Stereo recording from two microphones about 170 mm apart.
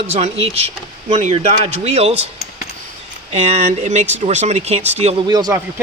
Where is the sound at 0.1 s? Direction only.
40° right (ahead or behind).